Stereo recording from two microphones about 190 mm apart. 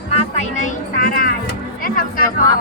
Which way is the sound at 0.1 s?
35° left (ahead or behind).